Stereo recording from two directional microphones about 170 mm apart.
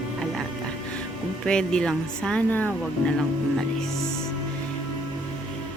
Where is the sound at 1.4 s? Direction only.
5° left (ahead or behind).